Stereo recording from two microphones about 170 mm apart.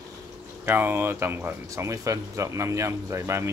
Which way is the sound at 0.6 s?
10° right (ahead or behind).